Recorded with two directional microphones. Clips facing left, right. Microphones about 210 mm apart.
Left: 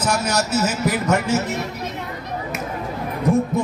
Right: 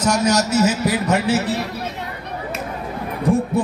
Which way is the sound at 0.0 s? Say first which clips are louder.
Right 4 dB; 40° right (ahead or behind).